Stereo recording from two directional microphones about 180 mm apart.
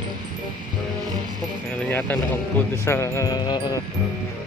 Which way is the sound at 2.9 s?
15° left (ahead or behind).